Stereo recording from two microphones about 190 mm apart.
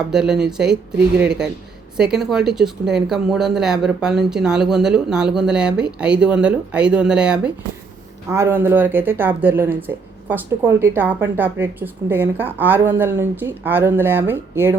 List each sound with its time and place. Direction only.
0.1 s speech: 5° right (ahead or behind)